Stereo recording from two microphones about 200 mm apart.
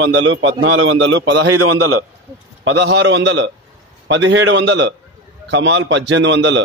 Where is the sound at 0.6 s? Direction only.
90° right.